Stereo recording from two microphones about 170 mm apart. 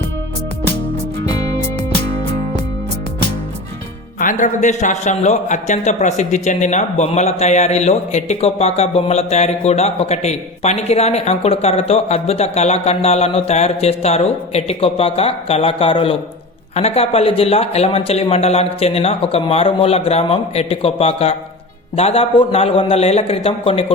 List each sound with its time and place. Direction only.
4.2 s a man's voice: 50° left (ahead or behind); by 23.8 s 35° left (ahead or behind)